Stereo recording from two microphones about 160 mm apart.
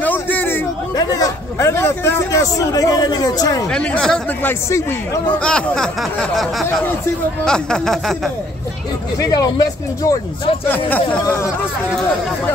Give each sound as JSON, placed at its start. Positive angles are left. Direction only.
{"t": 0.0, "sound": "a sound", "side_deg": 10}
{"t": 0.9, "sound": "a man's voice", "side_deg": 20}
{"t": 3.7, "sound": "a man's voice", "side_deg": 5}
{"t": 5.4, "sound": "speech", "side_deg": 5}
{"t": 7.4, "sound": "speech", "side_deg": 5}
{"t": 9.2, "sound": "a man's voice", "side_deg": 25}